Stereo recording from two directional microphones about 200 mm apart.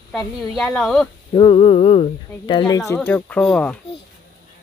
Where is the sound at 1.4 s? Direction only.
25° left (ahead or behind); by 3.8 s 5° left (ahead or behind).